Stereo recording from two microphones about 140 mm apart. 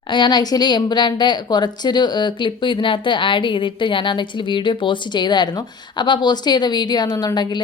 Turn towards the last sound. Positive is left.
turn(degrees=30)  # may be behind; listen again after turning